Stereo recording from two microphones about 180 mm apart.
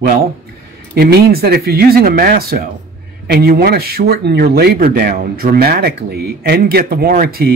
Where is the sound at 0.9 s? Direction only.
60° right (ahead or behind).